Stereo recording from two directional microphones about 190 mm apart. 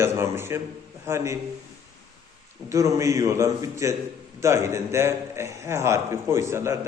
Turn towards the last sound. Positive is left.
turn(degrees=-15)  # may be behind; listen again after turning